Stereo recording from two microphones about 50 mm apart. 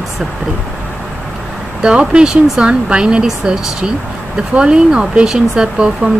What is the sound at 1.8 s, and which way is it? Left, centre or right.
Speech, centre.